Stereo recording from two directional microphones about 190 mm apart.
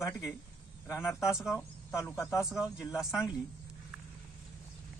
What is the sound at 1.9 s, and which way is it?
Speech, 15° left (ahead or behind).